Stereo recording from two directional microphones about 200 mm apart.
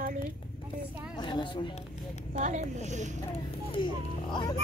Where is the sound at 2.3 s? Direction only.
35° right (ahead or behind).